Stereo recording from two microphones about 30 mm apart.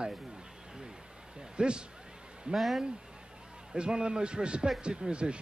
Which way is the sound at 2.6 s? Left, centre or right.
Centre.